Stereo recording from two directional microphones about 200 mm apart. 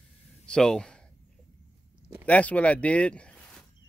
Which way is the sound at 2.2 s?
5° left (ahead or behind).